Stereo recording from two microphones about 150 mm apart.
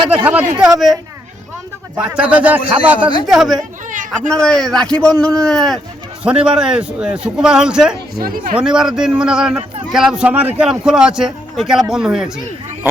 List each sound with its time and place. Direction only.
0.6 s speech: centre (ahead or behind)
2.0 s speech: 10° right (ahead or behind)
3.8 s a sound: 60° right (ahead or behind)
4.3 s speech: 5° left (ahead or behind)
8.1 s a woman's voice: 75° right (ahead or behind)
8.5 s speech: 5° right (ahead or behind)